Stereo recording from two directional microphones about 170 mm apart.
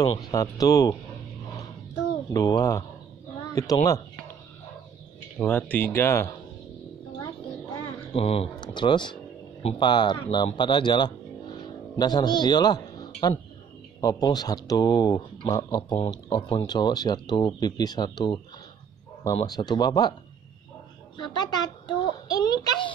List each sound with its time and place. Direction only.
0.3 s speech: 20° left (ahead or behind)
2.3 s speech: 20° left (ahead or behind)
5.4 s speech: 10° left (ahead or behind)
8.1 s a man's voice: 35° left (ahead or behind)
19.4 s speech: 25° left (ahead or behind)
21.2 s speech: 25° left (ahead or behind)